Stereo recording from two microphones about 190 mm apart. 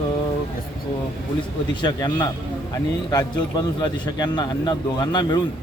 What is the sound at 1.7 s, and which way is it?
A man's voice, 25° left (ahead or behind).